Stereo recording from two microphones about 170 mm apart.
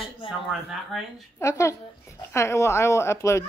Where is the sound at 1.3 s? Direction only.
15° left (ahead or behind).